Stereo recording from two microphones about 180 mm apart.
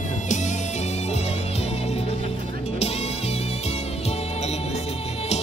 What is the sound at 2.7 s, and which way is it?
Music, 35° left (ahead or behind).